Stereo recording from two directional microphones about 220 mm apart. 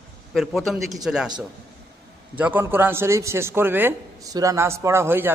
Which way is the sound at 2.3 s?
10° right (ahead or behind).